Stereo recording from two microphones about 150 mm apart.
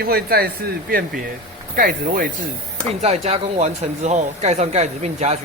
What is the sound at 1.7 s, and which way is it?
Speech, 65° right (ahead or behind).